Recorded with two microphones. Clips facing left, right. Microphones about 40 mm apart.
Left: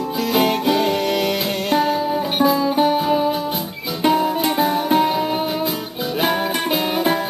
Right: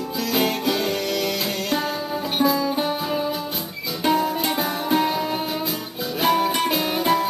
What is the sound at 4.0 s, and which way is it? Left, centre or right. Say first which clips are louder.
Music: left 4 dB; centre.